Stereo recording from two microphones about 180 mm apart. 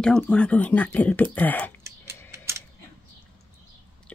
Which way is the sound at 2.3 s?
15° right (ahead or behind).